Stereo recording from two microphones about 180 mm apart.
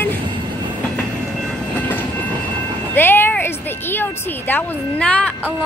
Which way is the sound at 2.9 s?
10° left (ahead or behind).